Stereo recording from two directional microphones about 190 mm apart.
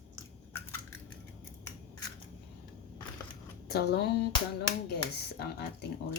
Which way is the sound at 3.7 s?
60° left (ahead or behind).